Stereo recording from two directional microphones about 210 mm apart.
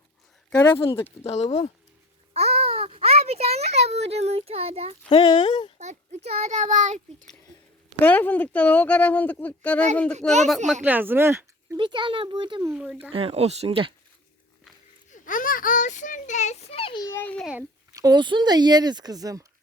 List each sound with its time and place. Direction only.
0.5 s speech: 10° left (ahead or behind)
1.2 s speech: 30° left (ahead or behind)
2.3 s a sound: 30° right (ahead or behind)
5.0 s speech: 20° left (ahead or behind)
5.8 s a child's voice: 35° right (ahead or behind)
8.0 s speech: 10° left (ahead or behind)
10.8 s speech: 10° right (ahead or behind)
11.8 s speech: 20° right (ahead or behind)
12.7 s speech: 5° right (ahead or behind)
13.1 s speech: 25° right (ahead or behind)
15.1 s a child's voice: 40° left (ahead or behind)
17.1 s speech: 10° left (ahead or behind)
17.5 s speech: 15° right (ahead or behind)